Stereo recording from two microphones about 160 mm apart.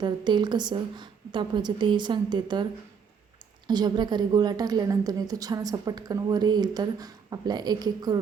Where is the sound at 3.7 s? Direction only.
25° right (ahead or behind).